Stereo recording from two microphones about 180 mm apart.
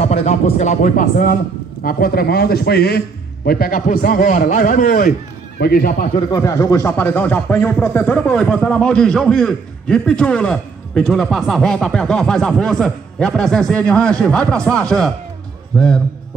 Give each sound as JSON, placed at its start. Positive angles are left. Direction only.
{"t": 0.0, "sound": "a man's voice", "side_deg": 35}
{"t": 6.1, "sound": "speech", "side_deg": 20}